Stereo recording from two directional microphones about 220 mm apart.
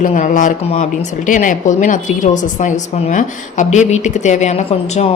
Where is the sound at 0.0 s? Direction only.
35° left (ahead or behind).